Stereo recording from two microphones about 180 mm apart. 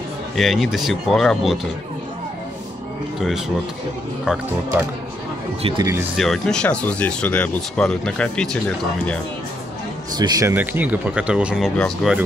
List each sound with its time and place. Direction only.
0.4 s speech: centre (ahead or behind)
3.2 s speech: centre (ahead or behind)
5.6 s speech: 30° right (ahead or behind)
6.1 s speech: centre (ahead or behind)
10.1 s speech: 20° right (ahead or behind); by 12.2 s centre (ahead or behind)